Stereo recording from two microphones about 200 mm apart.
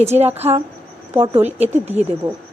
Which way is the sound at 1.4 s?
35° right (ahead or behind).